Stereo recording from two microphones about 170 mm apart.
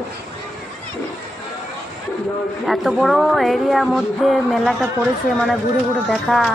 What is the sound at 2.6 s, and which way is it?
Speech, centre (ahead or behind).